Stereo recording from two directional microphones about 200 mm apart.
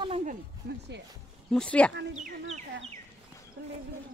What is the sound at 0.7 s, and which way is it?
Music, 50° right (ahead or behind).